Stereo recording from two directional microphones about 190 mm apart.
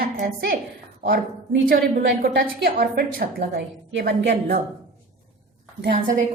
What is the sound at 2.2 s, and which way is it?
A woman's voice, 55° right (ahead or behind).